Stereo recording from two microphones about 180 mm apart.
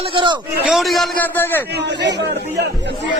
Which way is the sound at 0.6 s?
Centre (ahead or behind).